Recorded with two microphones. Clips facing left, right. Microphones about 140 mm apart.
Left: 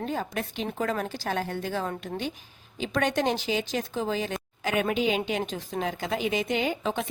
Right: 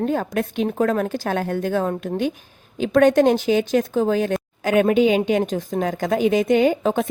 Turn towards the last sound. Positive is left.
turn(degrees=-45)  # may be behind; listen again after turning